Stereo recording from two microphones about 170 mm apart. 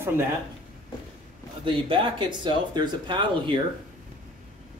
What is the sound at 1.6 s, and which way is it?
Speech, 30° right (ahead or behind).